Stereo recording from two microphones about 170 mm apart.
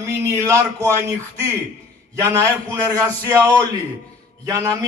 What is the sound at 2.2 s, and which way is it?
A man's voice, 20° right (ahead or behind).